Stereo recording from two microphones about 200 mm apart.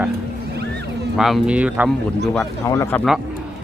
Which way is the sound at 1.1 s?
Centre (ahead or behind).